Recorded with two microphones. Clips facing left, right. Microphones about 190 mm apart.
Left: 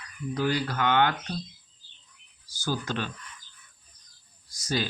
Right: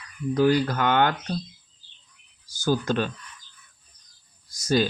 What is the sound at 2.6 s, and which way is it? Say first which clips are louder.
Speech: right 7 dB; 45° right (ahead or behind).